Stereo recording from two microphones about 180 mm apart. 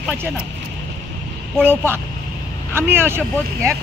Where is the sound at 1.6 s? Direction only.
15° right (ahead or behind).